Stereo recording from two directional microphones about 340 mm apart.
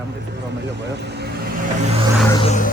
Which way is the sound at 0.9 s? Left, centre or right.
Right.